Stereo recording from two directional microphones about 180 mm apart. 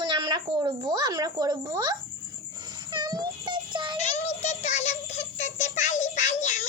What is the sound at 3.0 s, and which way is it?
Child singing, 25° right (ahead or behind).